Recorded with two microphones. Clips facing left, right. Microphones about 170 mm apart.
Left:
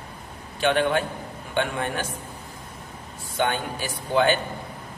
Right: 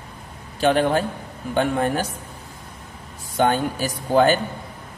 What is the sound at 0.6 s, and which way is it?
A man's voice, 35° right (ahead or behind).